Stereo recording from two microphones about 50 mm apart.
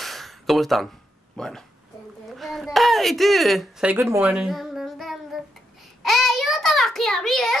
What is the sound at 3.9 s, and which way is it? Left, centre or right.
Speech, right.